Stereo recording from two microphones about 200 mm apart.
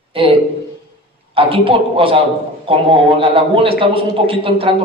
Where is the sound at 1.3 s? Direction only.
25° right (ahead or behind).